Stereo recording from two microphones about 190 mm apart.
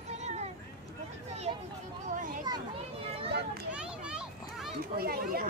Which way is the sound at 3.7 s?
5° right (ahead or behind).